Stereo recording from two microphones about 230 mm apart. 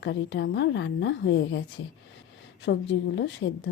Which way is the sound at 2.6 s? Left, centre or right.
Left.